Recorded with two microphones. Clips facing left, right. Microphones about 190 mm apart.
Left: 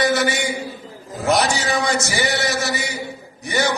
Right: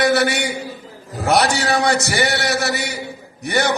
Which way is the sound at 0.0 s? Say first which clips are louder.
Right 2 dB; 65° right (ahead or behind).